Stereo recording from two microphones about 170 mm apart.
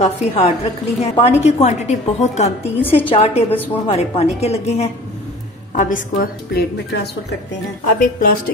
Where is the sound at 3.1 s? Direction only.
35° left (ahead or behind).